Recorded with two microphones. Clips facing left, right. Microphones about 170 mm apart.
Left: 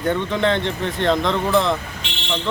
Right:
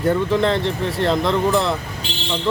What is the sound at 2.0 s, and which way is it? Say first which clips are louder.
Vehicle: right 4 dB; 35° right (ahead or behind).